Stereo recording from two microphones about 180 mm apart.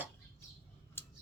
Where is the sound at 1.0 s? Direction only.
15° left (ahead or behind).